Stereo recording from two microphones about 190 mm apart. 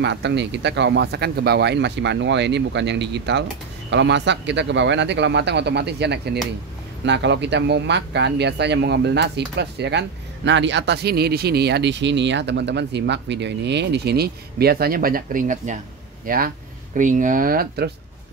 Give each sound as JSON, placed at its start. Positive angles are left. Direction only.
{"t": 0.0, "sound": "speech", "side_deg": -65}